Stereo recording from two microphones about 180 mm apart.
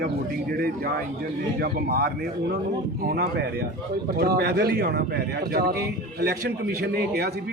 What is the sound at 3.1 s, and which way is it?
Speech, 60° right (ahead or behind).